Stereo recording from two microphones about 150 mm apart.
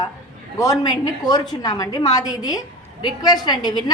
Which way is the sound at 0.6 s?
25° left (ahead or behind).